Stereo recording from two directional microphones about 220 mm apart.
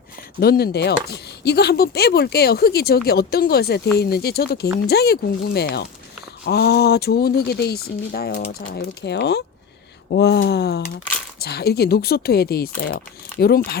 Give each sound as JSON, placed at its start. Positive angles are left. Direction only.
{"t": 0.3, "sound": "speech", "side_deg": 45}